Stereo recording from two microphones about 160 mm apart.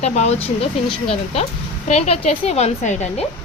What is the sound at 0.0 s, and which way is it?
A woman's voice, 40° left (ahead or behind).